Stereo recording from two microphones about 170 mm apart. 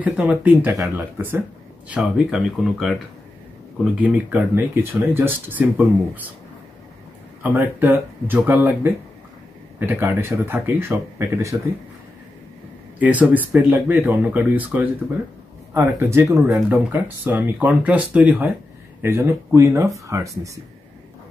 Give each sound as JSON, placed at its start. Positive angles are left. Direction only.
{"t": 0.0, "sound": "speech", "side_deg": -10}
{"t": 7.4, "sound": "speech", "side_deg": -10}
{"t": 13.0, "sound": "speech", "side_deg": -10}